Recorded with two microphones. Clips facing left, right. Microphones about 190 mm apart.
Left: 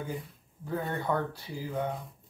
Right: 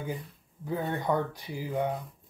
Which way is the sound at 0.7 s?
15° right (ahead or behind).